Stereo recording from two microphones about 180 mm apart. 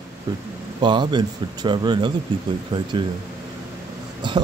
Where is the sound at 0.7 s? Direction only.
25° right (ahead or behind).